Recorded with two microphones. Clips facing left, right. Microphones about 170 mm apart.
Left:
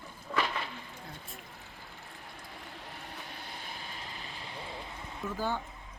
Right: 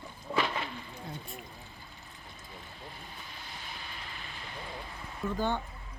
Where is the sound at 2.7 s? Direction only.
75° left (ahead or behind); by 4.7 s 30° left (ahead or behind).